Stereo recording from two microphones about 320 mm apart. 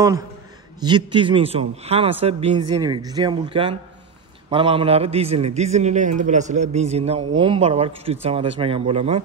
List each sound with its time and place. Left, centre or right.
0.8 s a man's voice: centre